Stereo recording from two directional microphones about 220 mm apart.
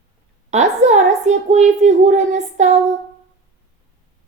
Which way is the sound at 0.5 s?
30° right (ahead or behind).